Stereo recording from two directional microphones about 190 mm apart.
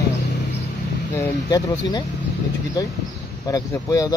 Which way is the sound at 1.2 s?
20° left (ahead or behind).